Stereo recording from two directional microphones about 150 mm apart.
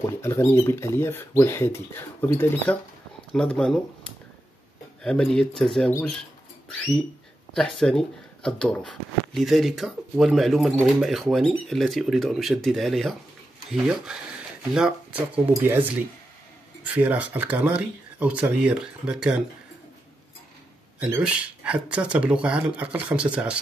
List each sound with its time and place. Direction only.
0.2 s speech: 15° left (ahead or behind)
3.5 s speech: 5° left (ahead or behind)
5.0 s speech: 5° left (ahead or behind)
7.5 s speech: 5° left (ahead or behind)
21.0 s speech: 10° right (ahead or behind)